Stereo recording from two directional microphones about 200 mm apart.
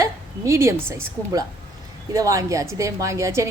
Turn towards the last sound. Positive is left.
turn(degrees=-15)  # may be behind; listen again after turning